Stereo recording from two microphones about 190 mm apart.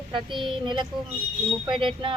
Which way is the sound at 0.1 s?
25° right (ahead or behind).